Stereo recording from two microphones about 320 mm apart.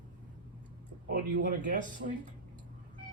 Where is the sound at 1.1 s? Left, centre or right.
Right.